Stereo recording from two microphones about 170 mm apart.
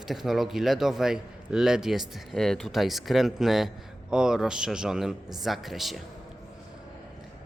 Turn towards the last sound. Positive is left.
turn(degrees=0)  # may be behind; listen again after turning